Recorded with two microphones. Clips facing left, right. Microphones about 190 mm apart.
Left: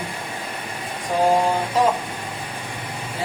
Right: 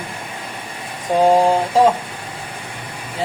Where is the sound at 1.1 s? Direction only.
25° right (ahead or behind).